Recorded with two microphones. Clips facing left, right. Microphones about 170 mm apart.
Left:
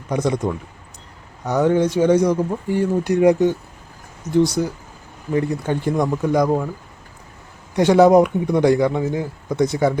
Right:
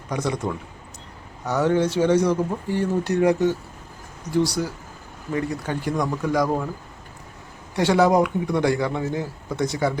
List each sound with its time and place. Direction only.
0.1 s speech: 20° left (ahead or behind)
7.8 s speech: 20° left (ahead or behind)